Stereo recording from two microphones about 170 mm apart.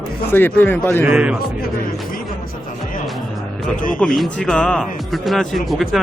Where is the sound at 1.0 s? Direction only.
5° right (ahead or behind).